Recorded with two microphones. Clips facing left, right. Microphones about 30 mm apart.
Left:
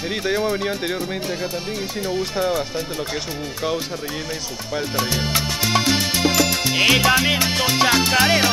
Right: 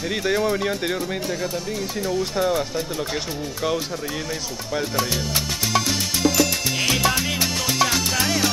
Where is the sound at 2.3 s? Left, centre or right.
Centre.